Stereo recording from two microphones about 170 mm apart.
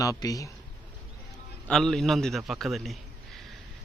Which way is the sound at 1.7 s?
5° left (ahead or behind).